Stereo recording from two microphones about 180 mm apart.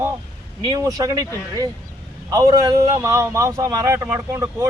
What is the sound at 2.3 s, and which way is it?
A man's voice, 20° right (ahead or behind).